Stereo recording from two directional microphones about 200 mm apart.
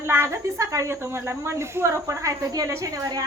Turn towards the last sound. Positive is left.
turn(degrees=-20)  # may be behind; listen again after turning